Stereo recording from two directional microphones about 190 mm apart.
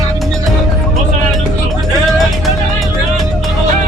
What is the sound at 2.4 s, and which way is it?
Music, centre (ahead or behind).